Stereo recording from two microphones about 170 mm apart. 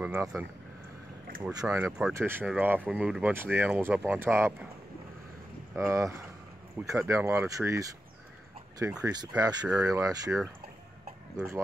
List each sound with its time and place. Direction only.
0.0 s speech: 15° right (ahead or behind)
1.5 s speech: 20° right (ahead or behind)
1.9 s speech: centre (ahead or behind)
2.1 s speech: 15° right (ahead or behind)
5.8 s speech: 20° right (ahead or behind)